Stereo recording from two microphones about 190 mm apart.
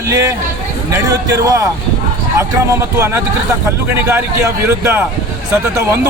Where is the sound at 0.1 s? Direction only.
15° right (ahead or behind).